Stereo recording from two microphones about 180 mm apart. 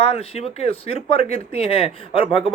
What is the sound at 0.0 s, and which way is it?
Speech, 35° left (ahead or behind).